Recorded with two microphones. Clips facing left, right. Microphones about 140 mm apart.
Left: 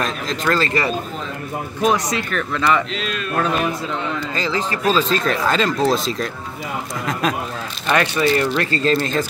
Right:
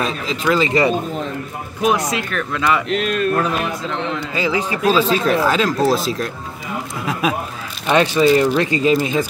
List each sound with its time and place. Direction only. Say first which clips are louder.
0.0 s speech: right 1 dB; 5° right (ahead or behind)
2.9 s speech: right 7 dB; 50° right (ahead or behind)
4.4 s speech: right 4 dB; 10° right (ahead or behind)